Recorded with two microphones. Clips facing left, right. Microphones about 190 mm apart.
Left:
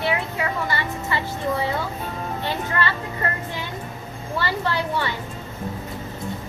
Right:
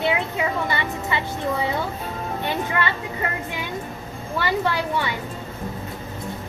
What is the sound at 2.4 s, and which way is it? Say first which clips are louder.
Speech: right 1 dB; 15° right (ahead or behind).